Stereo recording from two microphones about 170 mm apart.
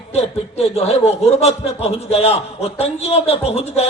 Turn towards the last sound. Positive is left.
turn(degrees=40)  # may be behind; listen again after turning